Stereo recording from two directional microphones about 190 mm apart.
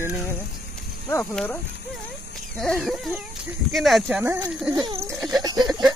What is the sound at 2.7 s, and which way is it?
Speech, centre (ahead or behind).